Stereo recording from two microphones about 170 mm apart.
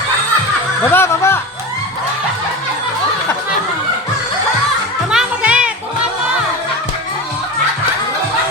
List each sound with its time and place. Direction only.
0.9 s music: 15° left (ahead or behind)
5.1 s children playing: 5° right (ahead or behind)